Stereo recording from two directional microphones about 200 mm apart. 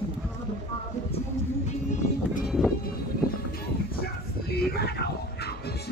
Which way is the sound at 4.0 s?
50° left (ahead or behind).